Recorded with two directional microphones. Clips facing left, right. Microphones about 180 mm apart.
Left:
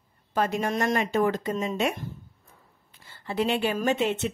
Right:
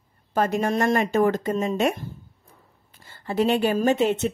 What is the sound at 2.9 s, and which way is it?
Speech, 45° right (ahead or behind).